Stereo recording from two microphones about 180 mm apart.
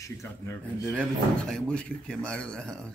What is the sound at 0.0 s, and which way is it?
Speech, 15° left (ahead or behind).